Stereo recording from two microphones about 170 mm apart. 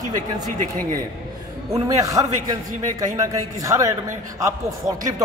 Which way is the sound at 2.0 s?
20° right (ahead or behind).